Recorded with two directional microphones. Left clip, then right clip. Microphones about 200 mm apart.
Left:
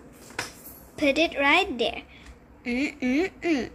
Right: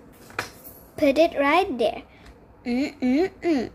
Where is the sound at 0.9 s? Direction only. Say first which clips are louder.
Right 4 dB; 20° right (ahead or behind).